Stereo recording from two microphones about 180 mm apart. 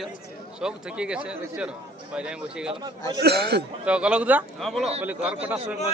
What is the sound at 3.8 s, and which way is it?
A man's voice, 5° right (ahead or behind).